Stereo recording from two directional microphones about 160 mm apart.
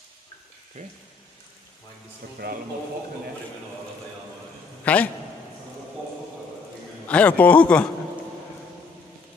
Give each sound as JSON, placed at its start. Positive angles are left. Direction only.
{"t": 0.8, "sound": "speech", "side_deg": -45}
{"t": 2.4, "sound": "speech", "side_deg": -75}
{"t": 4.8, "sound": "a man's voice", "side_deg": 10}
{"t": 7.1, "sound": "a man's voice", "side_deg": 10}